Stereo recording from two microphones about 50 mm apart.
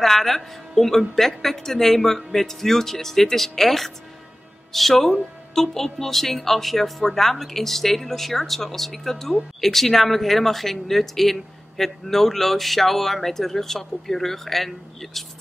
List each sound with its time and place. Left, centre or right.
0.0 s speech: centre